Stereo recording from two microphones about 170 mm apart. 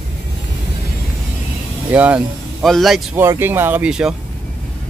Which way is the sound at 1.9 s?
10° right (ahead or behind).